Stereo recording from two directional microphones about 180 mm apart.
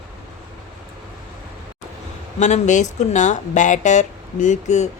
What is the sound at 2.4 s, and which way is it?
Speech, 40° left (ahead or behind).